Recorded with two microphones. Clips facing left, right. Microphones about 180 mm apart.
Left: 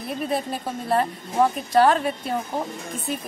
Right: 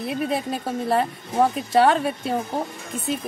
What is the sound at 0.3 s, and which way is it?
Speech, centre (ahead or behind).